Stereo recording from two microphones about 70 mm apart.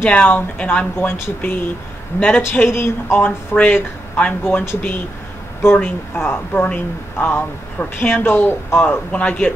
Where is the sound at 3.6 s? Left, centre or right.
Left.